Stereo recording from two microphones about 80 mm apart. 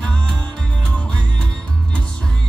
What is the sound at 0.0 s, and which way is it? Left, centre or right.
Music, centre.